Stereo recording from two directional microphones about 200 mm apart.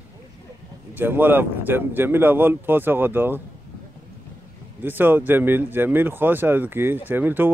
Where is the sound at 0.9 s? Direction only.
10° right (ahead or behind).